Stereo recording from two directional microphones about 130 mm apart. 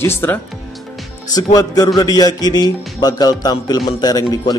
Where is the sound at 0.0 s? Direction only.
15° left (ahead or behind).